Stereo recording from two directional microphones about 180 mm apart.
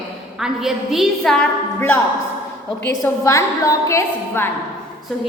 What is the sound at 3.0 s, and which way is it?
A woman's voice, 15° left (ahead or behind).